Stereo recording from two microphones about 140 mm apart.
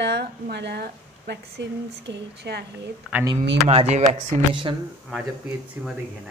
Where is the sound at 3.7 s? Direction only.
50° right (ahead or behind).